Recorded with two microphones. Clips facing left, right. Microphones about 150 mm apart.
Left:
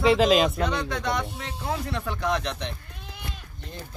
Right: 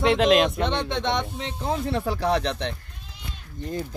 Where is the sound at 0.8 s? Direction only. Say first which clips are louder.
Right 2 dB; 25° right (ahead or behind).